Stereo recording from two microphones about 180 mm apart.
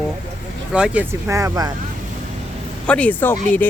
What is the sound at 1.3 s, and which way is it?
Speech, 20° right (ahead or behind).